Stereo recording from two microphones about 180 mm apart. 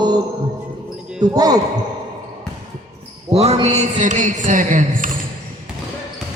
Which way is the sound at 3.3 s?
35° right (ahead or behind).